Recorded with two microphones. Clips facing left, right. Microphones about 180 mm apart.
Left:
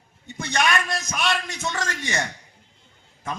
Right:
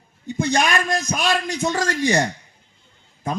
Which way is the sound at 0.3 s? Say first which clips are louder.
Right 4 dB; 30° right (ahead or behind).